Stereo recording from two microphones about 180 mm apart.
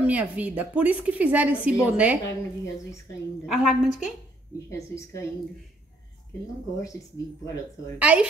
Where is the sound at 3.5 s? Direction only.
Centre (ahead or behind).